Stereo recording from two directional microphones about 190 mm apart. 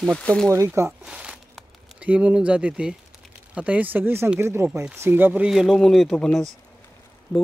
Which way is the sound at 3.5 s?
5° right (ahead or behind).